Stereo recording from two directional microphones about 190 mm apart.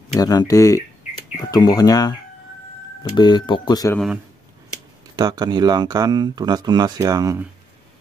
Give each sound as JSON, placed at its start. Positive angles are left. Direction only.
{"t": 0.1, "sound": "speech", "side_deg": 20}
{"t": 3.9, "sound": "a man's voice", "side_deg": 0}
{"t": 5.1, "sound": "speech", "side_deg": -20}